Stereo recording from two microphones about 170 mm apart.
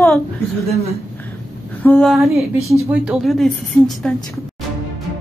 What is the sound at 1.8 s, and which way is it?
A woman's voice, 10° left (ahead or behind).